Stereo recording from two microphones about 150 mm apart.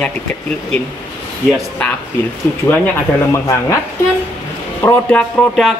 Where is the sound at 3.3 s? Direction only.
20° left (ahead or behind).